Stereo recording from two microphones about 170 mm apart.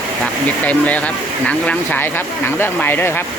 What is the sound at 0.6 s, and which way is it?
Speech, 10° left (ahead or behind).